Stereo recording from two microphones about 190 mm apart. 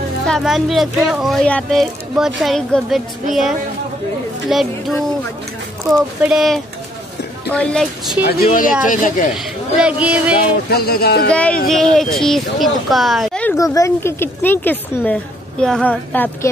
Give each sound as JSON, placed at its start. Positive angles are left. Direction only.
{"t": 0.3, "sound": "speech", "side_deg": 0}
{"t": 4.5, "sound": "speech", "side_deg": 0}
{"t": 8.5, "sound": "speech", "side_deg": 45}
{"t": 9.3, "sound": "speech", "side_deg": -5}
{"t": 10.7, "sound": "speech", "side_deg": 55}
{"t": 11.2, "sound": "speech", "side_deg": 5}
{"t": 13.6, "sound": "speech", "side_deg": 15}